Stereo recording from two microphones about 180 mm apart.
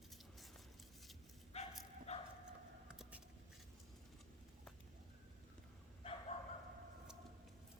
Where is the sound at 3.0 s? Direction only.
5° right (ahead or behind).